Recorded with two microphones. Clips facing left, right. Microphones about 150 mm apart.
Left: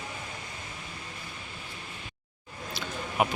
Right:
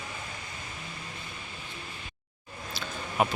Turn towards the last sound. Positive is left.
turn(degrees=15)  # may be behind; listen again after turning